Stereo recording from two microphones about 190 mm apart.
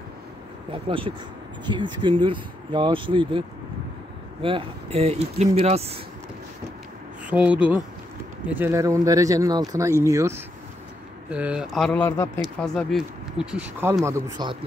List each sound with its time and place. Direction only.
0.7 s speech: 30° right (ahead or behind)
7.2 s speech: 5° right (ahead or behind); by 14.6 s 25° right (ahead or behind)